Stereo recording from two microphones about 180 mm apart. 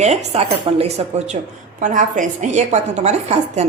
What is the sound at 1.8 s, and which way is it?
Speech, 45° right (ahead or behind).